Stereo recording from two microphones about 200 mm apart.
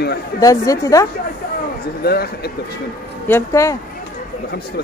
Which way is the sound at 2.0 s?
50° left (ahead or behind).